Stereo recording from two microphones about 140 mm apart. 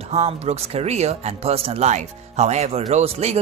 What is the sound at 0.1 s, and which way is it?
Speech, 50° right (ahead or behind).